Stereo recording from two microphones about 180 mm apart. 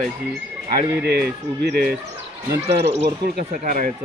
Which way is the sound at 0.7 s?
60° right (ahead or behind).